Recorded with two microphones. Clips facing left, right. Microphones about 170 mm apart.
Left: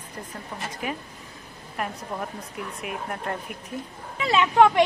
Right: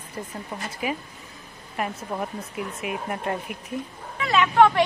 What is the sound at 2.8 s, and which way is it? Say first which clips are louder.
Speech: right 2 dB; 5° right (ahead or behind).